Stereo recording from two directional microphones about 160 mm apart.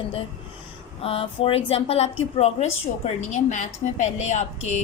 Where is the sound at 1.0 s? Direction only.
35° left (ahead or behind).